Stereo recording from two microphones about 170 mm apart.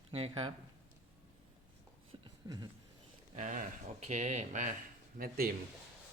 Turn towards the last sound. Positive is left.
turn(degrees=-60)  # may be behind; listen again after turning